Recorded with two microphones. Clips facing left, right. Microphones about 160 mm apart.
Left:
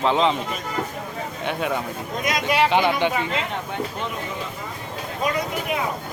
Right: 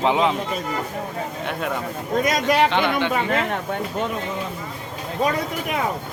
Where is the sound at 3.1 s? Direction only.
55° right (ahead or behind).